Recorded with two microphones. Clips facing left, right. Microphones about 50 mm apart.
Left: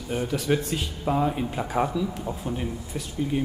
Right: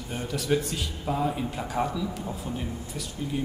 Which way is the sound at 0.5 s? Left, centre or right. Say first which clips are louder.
Right 1 dB; centre.